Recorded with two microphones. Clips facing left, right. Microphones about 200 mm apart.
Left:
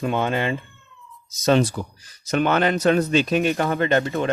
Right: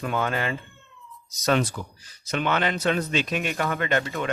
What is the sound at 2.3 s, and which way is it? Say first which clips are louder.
Speech: left 6 dB; 45° left (ahead or behind).